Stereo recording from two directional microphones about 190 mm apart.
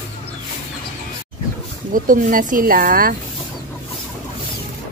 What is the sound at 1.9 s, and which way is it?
Speech, 45° right (ahead or behind).